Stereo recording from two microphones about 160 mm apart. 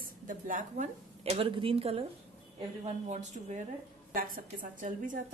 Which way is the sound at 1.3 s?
35° right (ahead or behind).